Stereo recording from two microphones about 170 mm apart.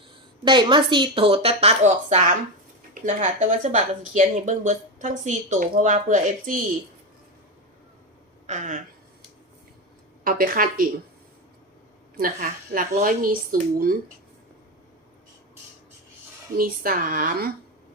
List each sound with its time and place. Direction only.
0.4 s a woman's voice: 30° right (ahead or behind); by 6.6 s 50° right (ahead or behind)
8.4 s speech: 50° right (ahead or behind)
10.2 s speech: 55° right (ahead or behind)
12.1 s speech: 55° right (ahead or behind)
16.6 s speech: 55° right (ahead or behind)